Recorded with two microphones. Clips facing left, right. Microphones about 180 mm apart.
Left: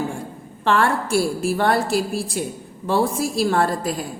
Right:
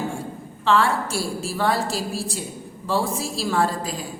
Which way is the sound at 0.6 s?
55° left (ahead or behind).